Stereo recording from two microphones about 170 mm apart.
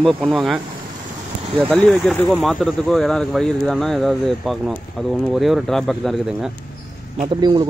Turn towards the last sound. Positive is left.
turn(degrees=-25)  # may be behind; listen again after turning